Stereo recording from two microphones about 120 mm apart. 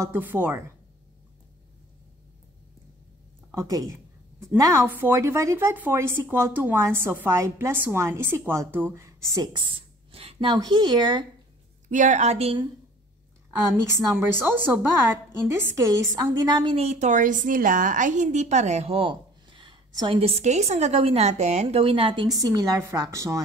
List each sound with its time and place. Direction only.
0.0 s a woman's voice: 15° right (ahead or behind)
3.5 s a woman's voice: 30° right (ahead or behind)
4.8 s speech: 15° right (ahead or behind)
9.5 s speech: 45° right (ahead or behind)
11.9 s a woman's voice: 90° right; by 12.6 s 55° right (ahead or behind)
14.1 s a woman's voice: 20° right (ahead or behind); by 16.7 s 35° right (ahead or behind)
16.7 s a woman's voice: 65° right (ahead or behind); by 23.4 s 25° right (ahead or behind)